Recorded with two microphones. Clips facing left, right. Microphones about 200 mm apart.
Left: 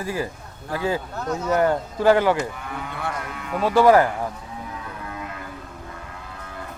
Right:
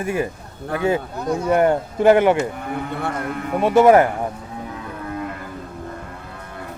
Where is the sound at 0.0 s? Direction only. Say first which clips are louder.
Right 4 dB; 25° right (ahead or behind).